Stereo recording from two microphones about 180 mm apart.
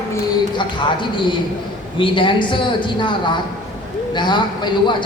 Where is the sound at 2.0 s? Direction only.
25° left (ahead or behind).